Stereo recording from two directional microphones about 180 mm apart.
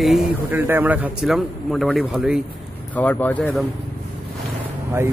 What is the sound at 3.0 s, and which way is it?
Speech, 10° left (ahead or behind).